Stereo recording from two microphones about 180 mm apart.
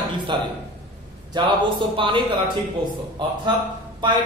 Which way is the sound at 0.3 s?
25° right (ahead or behind).